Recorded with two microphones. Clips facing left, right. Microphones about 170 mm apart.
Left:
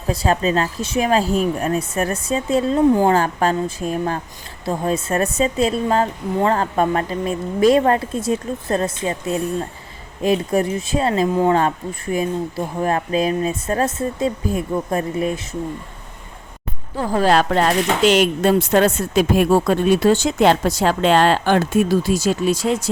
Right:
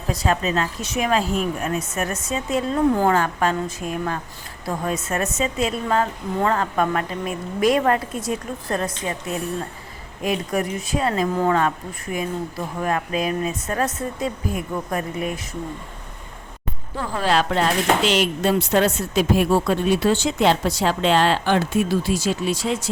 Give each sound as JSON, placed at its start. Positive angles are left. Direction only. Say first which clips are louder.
{"t": 0.1, "sound": "a woman's voice", "louder": "left 4 dB", "side_deg": 30}
{"t": 17.0, "sound": "speech", "louder": "left 5 dB", "side_deg": 45}